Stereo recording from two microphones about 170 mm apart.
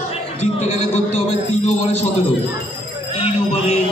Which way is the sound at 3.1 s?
35° left (ahead or behind).